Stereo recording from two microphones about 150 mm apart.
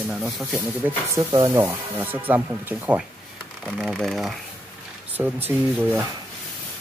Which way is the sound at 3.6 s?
5° left (ahead or behind).